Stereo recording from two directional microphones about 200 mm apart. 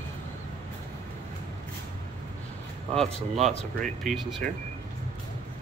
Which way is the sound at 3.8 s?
Centre (ahead or behind).